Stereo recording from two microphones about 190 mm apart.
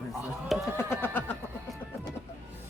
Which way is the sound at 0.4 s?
Centre (ahead or behind).